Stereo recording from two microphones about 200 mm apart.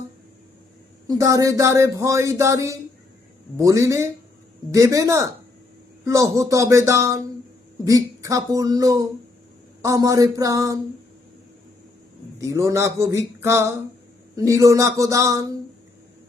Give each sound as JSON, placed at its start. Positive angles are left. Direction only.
{"t": 1.0, "sound": "speech", "side_deg": -15}
{"t": 12.4, "sound": "speech", "side_deg": -15}